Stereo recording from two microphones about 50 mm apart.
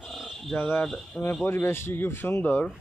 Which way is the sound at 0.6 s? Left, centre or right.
Left.